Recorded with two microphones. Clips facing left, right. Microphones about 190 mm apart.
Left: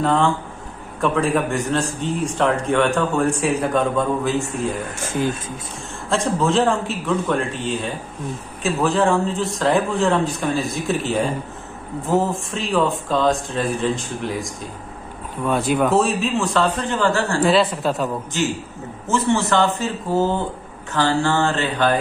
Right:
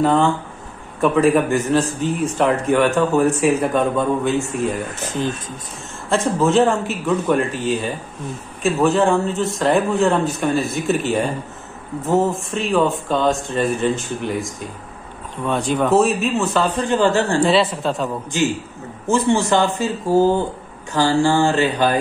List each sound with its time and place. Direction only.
0.0 s speech: centre (ahead or behind)
6.0 s speech: centre (ahead or behind); by 17.4 s 20° right (ahead or behind)
17.4 s speech: centre (ahead or behind)
19.0 s speech: 15° right (ahead or behind)